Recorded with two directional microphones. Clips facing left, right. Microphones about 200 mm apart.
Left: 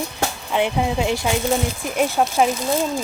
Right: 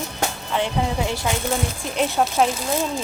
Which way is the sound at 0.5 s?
15° left (ahead or behind).